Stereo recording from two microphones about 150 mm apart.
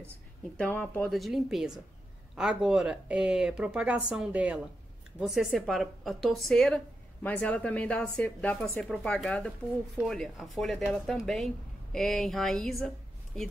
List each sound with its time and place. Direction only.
0.6 s speech: 10° left (ahead or behind)
1.1 s speech: centre (ahead or behind)